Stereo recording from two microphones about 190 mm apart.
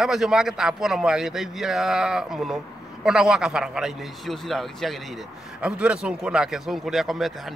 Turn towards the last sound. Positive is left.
turn(degrees=0)  # may be behind; listen again after turning